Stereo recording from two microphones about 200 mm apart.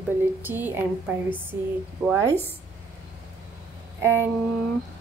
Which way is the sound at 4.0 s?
10° right (ahead or behind).